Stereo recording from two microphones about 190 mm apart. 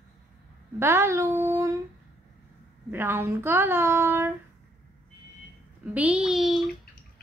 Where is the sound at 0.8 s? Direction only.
15° right (ahead or behind).